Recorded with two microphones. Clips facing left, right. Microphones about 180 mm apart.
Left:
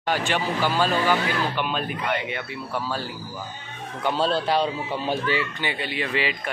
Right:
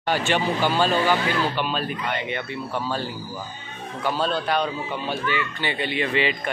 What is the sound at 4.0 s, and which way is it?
A man's voice, 25° left (ahead or behind).